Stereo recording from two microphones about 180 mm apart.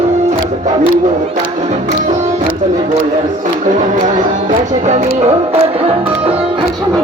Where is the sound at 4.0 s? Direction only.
40° right (ahead or behind).